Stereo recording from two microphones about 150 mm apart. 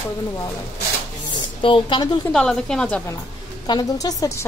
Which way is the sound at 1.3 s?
35° left (ahead or behind).